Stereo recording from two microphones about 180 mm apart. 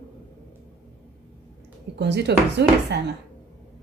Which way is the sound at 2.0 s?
70° right (ahead or behind).